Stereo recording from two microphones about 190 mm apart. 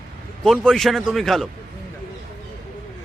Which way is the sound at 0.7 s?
Centre (ahead or behind).